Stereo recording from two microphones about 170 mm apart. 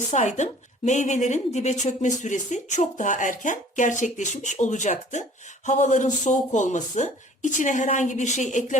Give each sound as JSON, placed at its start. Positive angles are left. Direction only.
{"t": 0.1, "sound": "speech", "side_deg": 45}